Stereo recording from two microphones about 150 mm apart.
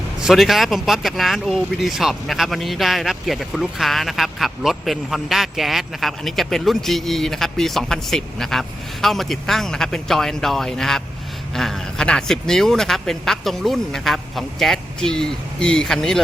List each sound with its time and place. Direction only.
0.2 s speech: centre (ahead or behind)